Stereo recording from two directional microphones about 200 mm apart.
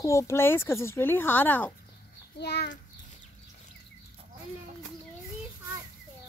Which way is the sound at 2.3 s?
55° left (ahead or behind).